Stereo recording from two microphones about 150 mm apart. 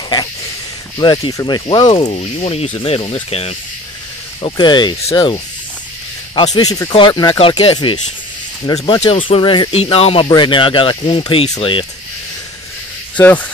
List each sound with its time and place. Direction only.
0.9 s speech: 30° left (ahead or behind)
2.1 s speech: 45° left (ahead or behind)
4.4 s speech: 30° left (ahead or behind)
7.3 s speech: 40° left (ahead or behind)
9.7 s speech: 40° left (ahead or behind)
13.1 s speech: 10° left (ahead or behind)